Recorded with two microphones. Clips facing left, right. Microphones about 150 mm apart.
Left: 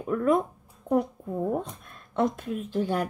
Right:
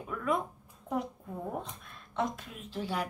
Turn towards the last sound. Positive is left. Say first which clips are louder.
# left 8 dB
turn(degrees=50)  # may be behind; listen again after turning